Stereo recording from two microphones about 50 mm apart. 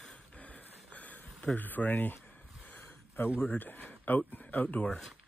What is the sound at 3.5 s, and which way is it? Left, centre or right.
Speech, left.